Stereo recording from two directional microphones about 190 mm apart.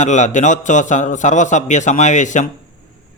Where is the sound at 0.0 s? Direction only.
40° left (ahead or behind).